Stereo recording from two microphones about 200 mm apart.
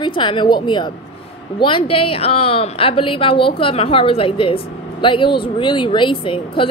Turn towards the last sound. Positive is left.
turn(degrees=25)  # may be behind; listen again after turning